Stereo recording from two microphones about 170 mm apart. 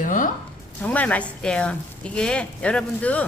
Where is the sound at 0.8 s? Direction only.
10° left (ahead or behind).